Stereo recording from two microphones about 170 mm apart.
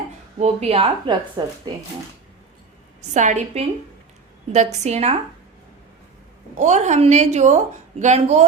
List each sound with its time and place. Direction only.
0.3 s speech: 40° right (ahead or behind)
1.4 s speech: 25° right (ahead or behind)
3.1 s a woman's voice: 45° right (ahead or behind)
6.6 s a woman's voice: 45° right (ahead or behind)